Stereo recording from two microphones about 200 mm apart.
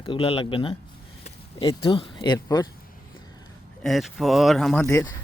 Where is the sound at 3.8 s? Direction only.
Centre (ahead or behind).